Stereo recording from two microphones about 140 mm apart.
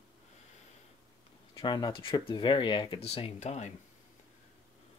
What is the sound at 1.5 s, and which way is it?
Speech, 30° left (ahead or behind).